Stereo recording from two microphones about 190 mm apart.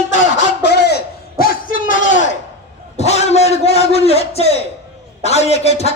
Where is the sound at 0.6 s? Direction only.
60° left (ahead or behind).